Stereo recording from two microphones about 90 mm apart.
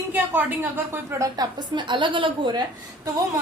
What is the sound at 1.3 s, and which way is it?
A woman's voice, 50° right (ahead or behind).